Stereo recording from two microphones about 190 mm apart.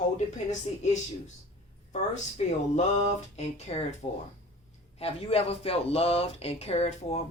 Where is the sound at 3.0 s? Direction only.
35° left (ahead or behind).